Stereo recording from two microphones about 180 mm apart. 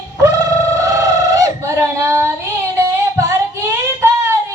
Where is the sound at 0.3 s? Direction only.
20° right (ahead or behind).